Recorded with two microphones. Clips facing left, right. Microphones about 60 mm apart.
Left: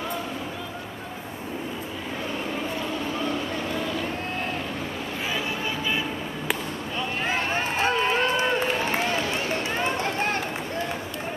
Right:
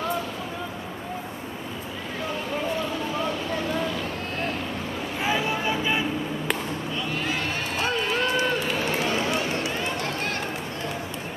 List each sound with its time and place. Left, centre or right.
5.2 s vehicle: right
7.2 s run: left